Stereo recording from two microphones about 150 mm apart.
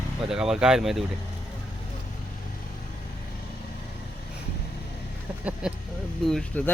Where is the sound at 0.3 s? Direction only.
5° right (ahead or behind).